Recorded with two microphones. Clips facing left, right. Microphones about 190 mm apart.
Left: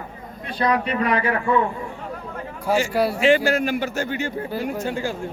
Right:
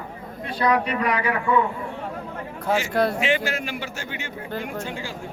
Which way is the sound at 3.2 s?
35° left (ahead or behind).